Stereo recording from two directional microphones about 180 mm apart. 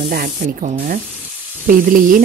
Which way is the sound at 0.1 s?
55° right (ahead or behind).